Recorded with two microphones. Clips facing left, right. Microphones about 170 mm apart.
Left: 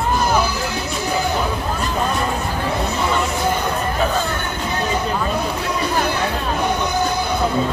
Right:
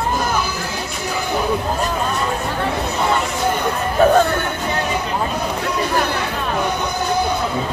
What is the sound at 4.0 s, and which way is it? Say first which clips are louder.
Music: right 9 dB; 50° right (ahead or behind).